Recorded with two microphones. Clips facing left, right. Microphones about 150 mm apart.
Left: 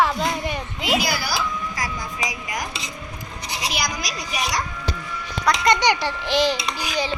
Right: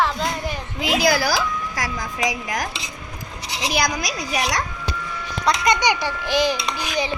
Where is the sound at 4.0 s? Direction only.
60° right (ahead or behind).